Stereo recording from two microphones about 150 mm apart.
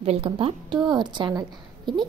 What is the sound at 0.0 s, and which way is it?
A woman's voice, 40° right (ahead or behind).